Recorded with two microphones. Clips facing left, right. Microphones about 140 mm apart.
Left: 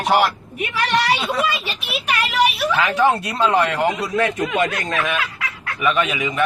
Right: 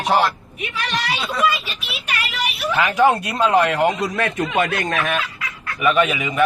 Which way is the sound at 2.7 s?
15° right (ahead or behind).